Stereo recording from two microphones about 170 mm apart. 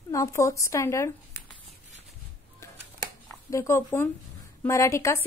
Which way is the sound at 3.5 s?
15° left (ahead or behind).